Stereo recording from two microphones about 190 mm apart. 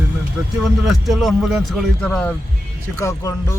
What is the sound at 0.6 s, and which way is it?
A man's voice, centre (ahead or behind).